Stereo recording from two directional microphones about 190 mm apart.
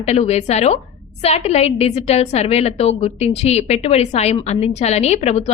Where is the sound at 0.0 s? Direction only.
35° left (ahead or behind).